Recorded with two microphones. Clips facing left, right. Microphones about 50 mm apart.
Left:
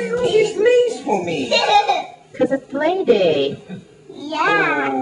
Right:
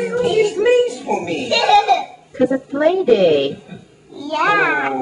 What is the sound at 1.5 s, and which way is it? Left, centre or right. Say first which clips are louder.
A woman's voice: right 2 dB; centre.